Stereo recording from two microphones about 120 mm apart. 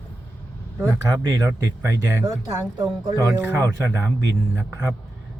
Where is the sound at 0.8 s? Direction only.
25° right (ahead or behind).